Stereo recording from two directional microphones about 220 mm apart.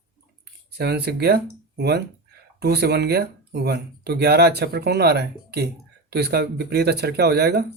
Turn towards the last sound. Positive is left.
turn(degrees=-50)  # may be behind; listen again after turning